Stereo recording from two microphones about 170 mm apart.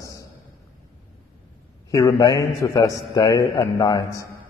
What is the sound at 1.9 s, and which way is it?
A man's voice, 25° left (ahead or behind).